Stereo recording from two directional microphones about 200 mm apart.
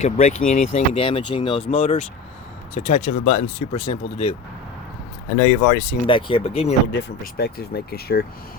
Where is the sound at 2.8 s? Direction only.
40° left (ahead or behind).